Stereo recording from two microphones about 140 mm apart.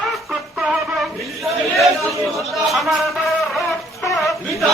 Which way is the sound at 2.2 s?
Centre (ahead or behind).